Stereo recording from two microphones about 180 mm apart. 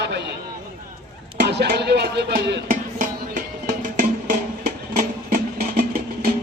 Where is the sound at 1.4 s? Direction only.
70° right (ahead or behind).